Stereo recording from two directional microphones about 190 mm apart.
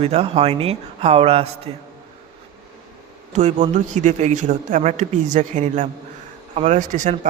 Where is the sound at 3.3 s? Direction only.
40° right (ahead or behind).